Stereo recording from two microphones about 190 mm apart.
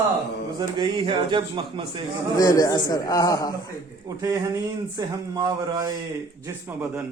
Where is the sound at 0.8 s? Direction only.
25° right (ahead or behind).